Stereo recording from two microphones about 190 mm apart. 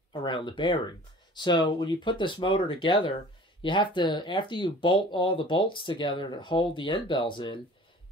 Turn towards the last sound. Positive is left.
turn(degrees=25)  # may be behind; listen again after turning